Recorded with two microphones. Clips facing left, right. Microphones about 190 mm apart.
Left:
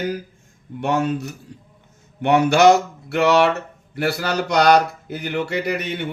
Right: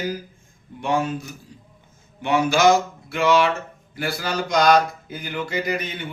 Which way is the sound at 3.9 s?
65° left (ahead or behind).